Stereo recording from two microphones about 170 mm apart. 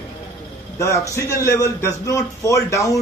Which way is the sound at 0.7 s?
15° left (ahead or behind).